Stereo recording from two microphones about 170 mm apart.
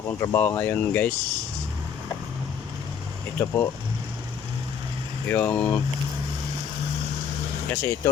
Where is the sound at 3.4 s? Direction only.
15° left (ahead or behind).